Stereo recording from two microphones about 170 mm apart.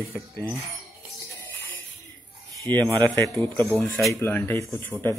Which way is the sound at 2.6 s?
10° left (ahead or behind).